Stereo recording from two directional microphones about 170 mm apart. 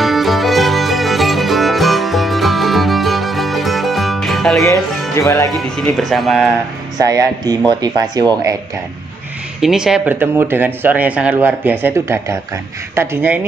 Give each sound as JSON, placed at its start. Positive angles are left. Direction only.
{"t": 0.0, "sound": "music", "side_deg": 0}
{"t": 5.1, "sound": "speech", "side_deg": 20}
{"t": 5.6, "sound": "speech", "side_deg": 0}
{"t": 7.0, "sound": "speech", "side_deg": -20}
{"t": 9.6, "sound": "speech", "side_deg": -5}